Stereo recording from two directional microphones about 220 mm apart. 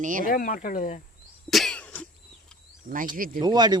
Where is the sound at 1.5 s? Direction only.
Centre (ahead or behind).